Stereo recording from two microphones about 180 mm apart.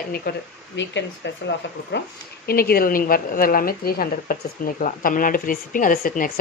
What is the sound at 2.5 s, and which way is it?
A woman's voice, 55° left (ahead or behind).